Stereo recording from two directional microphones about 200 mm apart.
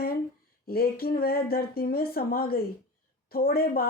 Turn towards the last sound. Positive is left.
turn(degrees=50)  # may be behind; listen again after turning